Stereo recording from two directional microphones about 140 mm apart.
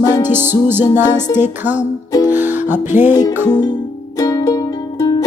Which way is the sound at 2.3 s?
15° right (ahead or behind).